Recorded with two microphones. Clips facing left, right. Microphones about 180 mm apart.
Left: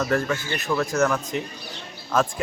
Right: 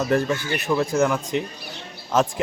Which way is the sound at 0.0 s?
20° right (ahead or behind).